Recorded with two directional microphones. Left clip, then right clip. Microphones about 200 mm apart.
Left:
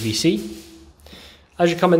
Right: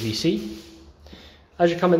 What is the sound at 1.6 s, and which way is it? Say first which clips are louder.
Speech: left 2 dB; 30° left (ahead or behind).